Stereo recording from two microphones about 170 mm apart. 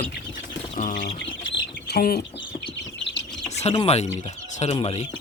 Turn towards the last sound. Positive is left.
turn(degrees=35)  # may be behind; listen again after turning